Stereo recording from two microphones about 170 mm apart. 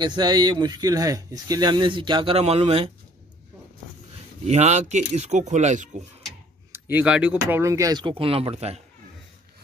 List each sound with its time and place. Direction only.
0.0 s speech: 25° right (ahead or behind)
4.5 s speech: 40° right (ahead or behind)
6.7 s speech: 10° right (ahead or behind); by 8.8 s 40° right (ahead or behind)